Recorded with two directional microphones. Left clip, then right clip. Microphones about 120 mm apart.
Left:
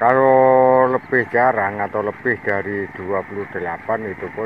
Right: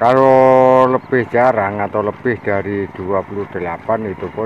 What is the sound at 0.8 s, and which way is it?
Speech, 20° right (ahead or behind).